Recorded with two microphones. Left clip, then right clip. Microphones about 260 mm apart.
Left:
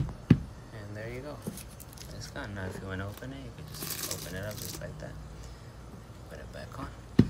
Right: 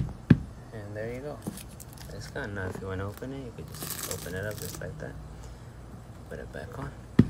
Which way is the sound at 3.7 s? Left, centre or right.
Centre.